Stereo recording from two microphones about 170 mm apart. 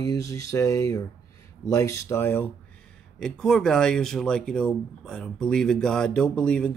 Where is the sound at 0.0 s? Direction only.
20° left (ahead or behind).